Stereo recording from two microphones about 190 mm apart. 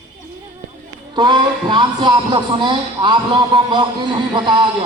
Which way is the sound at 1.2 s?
25° right (ahead or behind).